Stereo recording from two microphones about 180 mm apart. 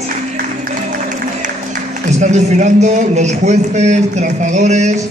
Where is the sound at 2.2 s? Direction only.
40° right (ahead or behind).